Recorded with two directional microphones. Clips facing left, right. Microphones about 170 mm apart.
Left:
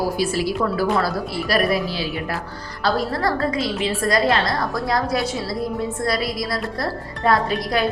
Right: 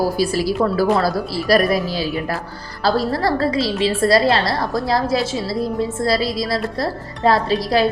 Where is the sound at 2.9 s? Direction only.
35° right (ahead or behind).